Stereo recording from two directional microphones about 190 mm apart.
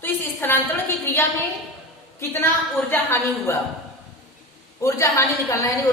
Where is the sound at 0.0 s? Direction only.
10° left (ahead or behind).